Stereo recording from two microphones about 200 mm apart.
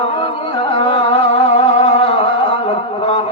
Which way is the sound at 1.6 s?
30° left (ahead or behind).